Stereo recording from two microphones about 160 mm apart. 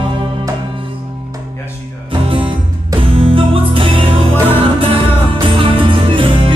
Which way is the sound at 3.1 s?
35° right (ahead or behind).